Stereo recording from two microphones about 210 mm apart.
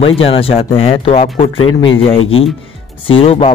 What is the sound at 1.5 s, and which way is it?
Speech, 75° left (ahead or behind).